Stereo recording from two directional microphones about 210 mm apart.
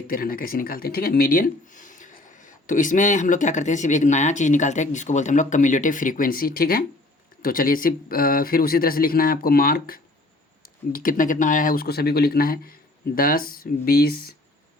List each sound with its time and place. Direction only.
0.1 s speech: 45° left (ahead or behind)